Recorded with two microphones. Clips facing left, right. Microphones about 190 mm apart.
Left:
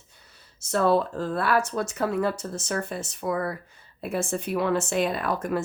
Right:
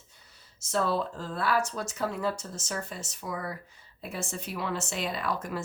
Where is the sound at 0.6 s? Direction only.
60° left (ahead or behind).